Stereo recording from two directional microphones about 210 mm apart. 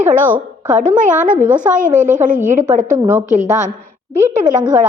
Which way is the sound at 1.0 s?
35° right (ahead or behind).